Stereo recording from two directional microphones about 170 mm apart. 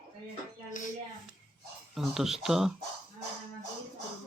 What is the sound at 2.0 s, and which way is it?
Speech, centre (ahead or behind).